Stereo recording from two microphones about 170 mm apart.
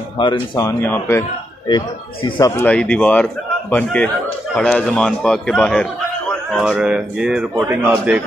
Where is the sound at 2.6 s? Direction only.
5° left (ahead or behind).